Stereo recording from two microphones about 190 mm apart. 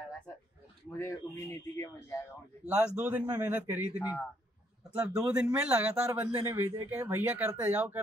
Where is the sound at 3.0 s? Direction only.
10° right (ahead or behind).